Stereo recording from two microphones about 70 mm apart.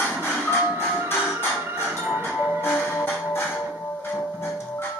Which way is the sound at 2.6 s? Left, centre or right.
Left.